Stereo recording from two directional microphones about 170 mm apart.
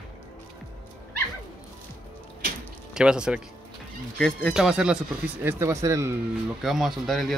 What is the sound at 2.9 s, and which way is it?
Speech, 5° right (ahead or behind).